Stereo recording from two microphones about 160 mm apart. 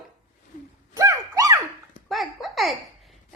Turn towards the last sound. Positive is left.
turn(degrees=0)  # may be behind; listen again after turning